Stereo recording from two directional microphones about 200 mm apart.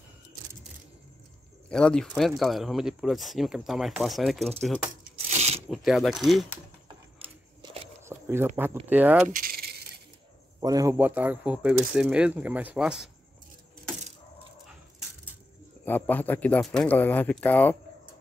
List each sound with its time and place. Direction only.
1.7 s speech: 5° left (ahead or behind)
5.3 s a sound: 35° right (ahead or behind)
5.9 s speech: centre (ahead or behind)
7.6 s a sound: 30° right (ahead or behind)
8.0 s a sound: 10° right (ahead or behind)
8.8 s speech: 10° right (ahead or behind)
9.3 s coin: 45° right (ahead or behind)
10.6 s speech: 15° right (ahead or behind)
14.7 s dog: 5° right (ahead or behind)
15.8 s speech: 10° left (ahead or behind)